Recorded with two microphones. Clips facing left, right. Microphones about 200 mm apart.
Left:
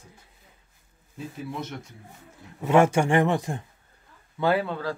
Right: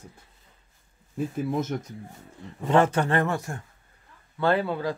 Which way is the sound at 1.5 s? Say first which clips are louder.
Right 7 dB; 45° right (ahead or behind).